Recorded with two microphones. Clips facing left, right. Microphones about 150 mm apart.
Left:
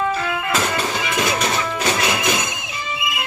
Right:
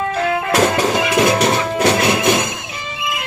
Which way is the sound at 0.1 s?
75° right (ahead or behind).